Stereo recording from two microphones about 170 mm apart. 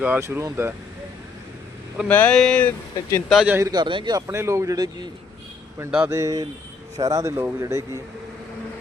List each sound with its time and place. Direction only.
0.0 s speech: 10° right (ahead or behind)
2.0 s speech: 10° left (ahead or behind)
3.2 s a man's voice: centre (ahead or behind)
3.5 s a man's voice: 20° right (ahead or behind)
4.3 s speech: 15° right (ahead or behind)